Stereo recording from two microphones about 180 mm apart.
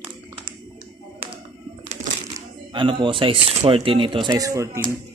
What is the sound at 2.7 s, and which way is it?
Speech, 30° right (ahead or behind).